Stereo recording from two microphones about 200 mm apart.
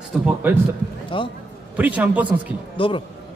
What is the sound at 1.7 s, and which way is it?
Speech, 10° right (ahead or behind).